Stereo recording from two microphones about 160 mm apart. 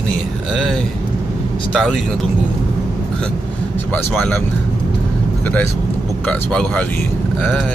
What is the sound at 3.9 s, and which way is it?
Speech, 10° left (ahead or behind).